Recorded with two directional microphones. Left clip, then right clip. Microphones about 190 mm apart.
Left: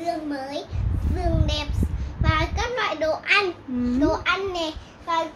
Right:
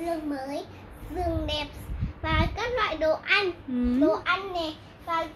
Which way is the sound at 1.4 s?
20° right (ahead or behind).